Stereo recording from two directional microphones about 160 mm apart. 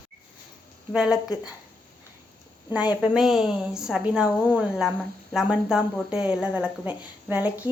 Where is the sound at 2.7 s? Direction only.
10° right (ahead or behind).